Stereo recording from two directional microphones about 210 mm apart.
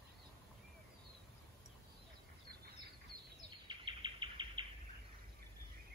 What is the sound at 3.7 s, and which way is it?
Bird, 25° right (ahead or behind).